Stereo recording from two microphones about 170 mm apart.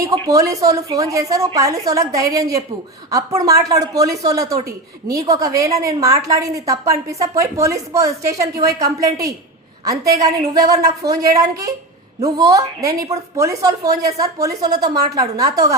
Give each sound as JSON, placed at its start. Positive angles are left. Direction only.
{"t": 0.0, "sound": "a woman's voice", "side_deg": -20}